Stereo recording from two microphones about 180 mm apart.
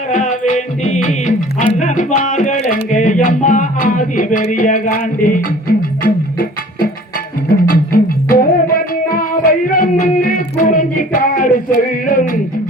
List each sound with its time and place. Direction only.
0.1 s music: 45° left (ahead or behind)